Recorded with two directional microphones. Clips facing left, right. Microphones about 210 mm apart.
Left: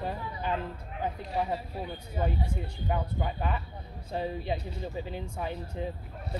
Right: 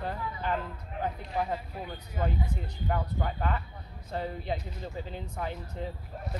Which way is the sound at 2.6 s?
10° left (ahead or behind).